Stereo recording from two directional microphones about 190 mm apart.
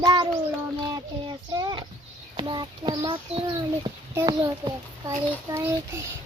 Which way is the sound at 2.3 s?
25° right (ahead or behind).